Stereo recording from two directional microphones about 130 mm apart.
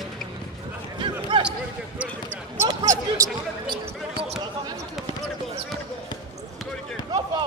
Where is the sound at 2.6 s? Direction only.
25° right (ahead or behind).